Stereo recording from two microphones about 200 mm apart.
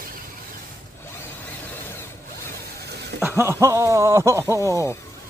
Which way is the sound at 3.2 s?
10° right (ahead or behind).